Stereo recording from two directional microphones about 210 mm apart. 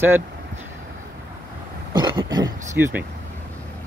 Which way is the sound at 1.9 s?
20° right (ahead or behind).